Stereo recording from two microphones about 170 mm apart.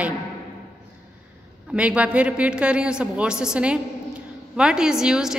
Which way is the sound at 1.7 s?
5° right (ahead or behind).